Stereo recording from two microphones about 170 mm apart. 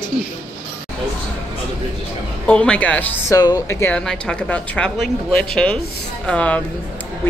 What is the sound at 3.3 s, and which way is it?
A woman's voice, 20° left (ahead or behind).